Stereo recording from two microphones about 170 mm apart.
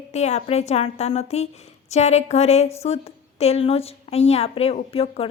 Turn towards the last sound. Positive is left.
turn(degrees=35)  # may be behind; listen again after turning